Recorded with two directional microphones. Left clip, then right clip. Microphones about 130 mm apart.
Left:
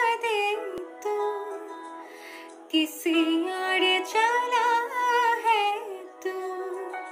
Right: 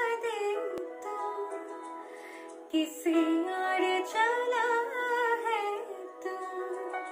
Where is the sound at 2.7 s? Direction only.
10° right (ahead or behind).